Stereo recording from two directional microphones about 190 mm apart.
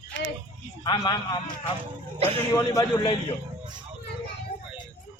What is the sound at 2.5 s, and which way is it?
Speech, 15° left (ahead or behind).